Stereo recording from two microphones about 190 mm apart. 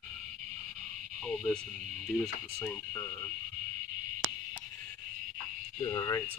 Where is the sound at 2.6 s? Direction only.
15° left (ahead or behind).